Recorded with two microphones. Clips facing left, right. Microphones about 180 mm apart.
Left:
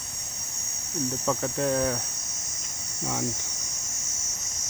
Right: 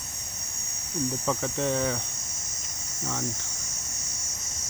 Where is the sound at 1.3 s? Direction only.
5° left (ahead or behind).